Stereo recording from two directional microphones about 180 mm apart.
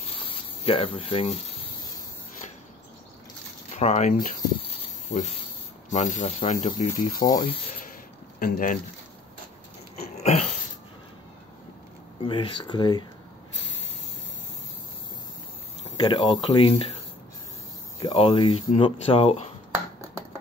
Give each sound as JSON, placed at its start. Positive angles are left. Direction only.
{"t": 0.7, "sound": "speech", "side_deg": 30}
{"t": 3.7, "sound": "speech", "side_deg": 40}
{"t": 4.6, "sound": "snake", "side_deg": 35}
{"t": 5.9, "sound": "speech", "side_deg": 40}
{"t": 7.2, "sound": "speech", "side_deg": 25}
{"t": 8.4, "sound": "speech", "side_deg": 50}
{"t": 9.9, "sound": "a sound", "side_deg": 40}
{"t": 12.2, "sound": "speech", "side_deg": 30}
{"t": 16.0, "sound": "speech", "side_deg": 25}
{"t": 19.7, "sound": "finger snapping", "side_deg": -15}